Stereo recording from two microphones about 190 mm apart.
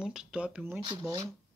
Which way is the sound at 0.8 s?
25° right (ahead or behind).